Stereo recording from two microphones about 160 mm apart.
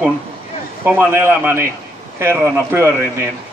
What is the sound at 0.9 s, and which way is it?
Speech, 15° right (ahead or behind).